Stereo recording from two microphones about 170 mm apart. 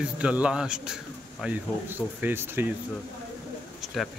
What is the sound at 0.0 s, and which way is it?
Speech, 5° right (ahead or behind).